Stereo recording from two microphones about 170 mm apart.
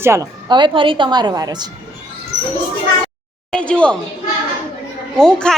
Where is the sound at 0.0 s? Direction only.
15° right (ahead or behind).